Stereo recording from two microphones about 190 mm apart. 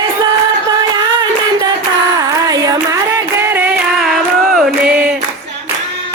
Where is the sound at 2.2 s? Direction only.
20° right (ahead or behind).